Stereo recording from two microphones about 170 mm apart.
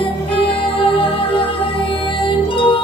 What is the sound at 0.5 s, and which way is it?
Music, 30° left (ahead or behind).